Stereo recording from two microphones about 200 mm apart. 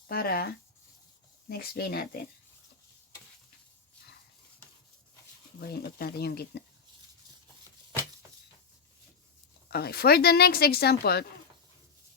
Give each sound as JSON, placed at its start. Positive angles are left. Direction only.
{"t": 0.1, "sound": "a woman's voice", "side_deg": 50}
{"t": 5.5, "sound": "a woman's voice", "side_deg": 50}
{"t": 9.6, "sound": "a woman's voice", "side_deg": 50}